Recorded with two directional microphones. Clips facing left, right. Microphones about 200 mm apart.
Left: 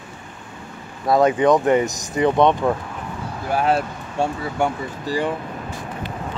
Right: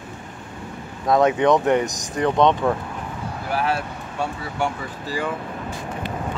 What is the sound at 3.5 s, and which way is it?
Speech, 25° left (ahead or behind).